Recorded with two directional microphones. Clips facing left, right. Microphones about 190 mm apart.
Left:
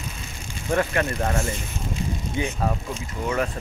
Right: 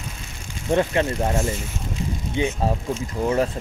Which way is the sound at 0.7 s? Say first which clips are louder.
Right 3 dB; 20° right (ahead or behind).